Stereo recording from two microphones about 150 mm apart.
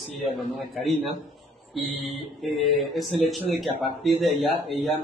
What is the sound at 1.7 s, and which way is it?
Mantra, centre (ahead or behind).